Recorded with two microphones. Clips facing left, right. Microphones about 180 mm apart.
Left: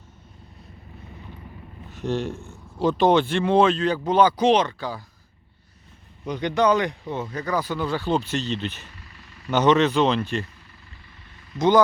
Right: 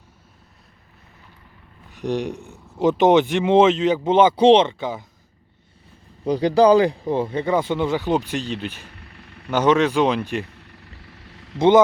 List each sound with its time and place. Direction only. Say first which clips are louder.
1.9 s speech: right 2 dB; 15° right (ahead or behind)
6.2 s speech: right 6 dB; 35° right (ahead or behind); by 8.8 s 10° right (ahead or behind)
8.8 s vehicle: right 3 dB; 60° right (ahead or behind)
9.5 s speech: right 1 dB; 10° right (ahead or behind)
10.4 s vehicle: right 3 dB; 70° right (ahead or behind)
11.5 s speech: right 4 dB; 25° right (ahead or behind)